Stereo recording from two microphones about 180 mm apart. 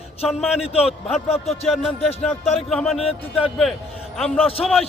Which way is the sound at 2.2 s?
Centre (ahead or behind).